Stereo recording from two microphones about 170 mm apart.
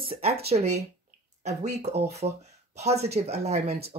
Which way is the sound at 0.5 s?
40° right (ahead or behind).